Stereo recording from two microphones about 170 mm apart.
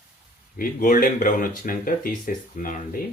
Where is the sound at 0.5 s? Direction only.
55° left (ahead or behind).